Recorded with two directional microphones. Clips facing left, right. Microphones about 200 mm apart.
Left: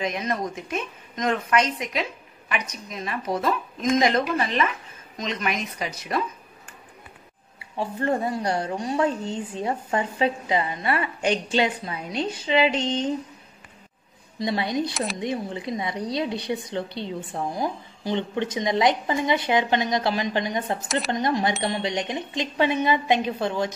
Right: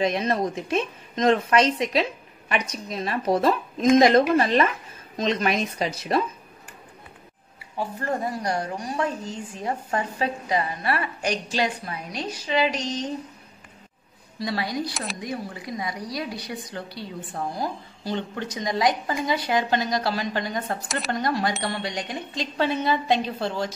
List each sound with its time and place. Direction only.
0.0 s a woman's voice: 30° right (ahead or behind)
5.1 s a woman's voice: 35° right (ahead or behind)
7.5 s a woman's voice: 25° left (ahead or behind)
14.4 s a woman's voice: 20° left (ahead or behind)